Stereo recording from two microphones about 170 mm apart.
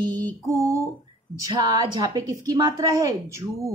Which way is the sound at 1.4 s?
20° right (ahead or behind).